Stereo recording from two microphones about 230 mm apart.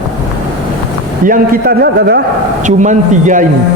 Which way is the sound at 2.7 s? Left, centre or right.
Right.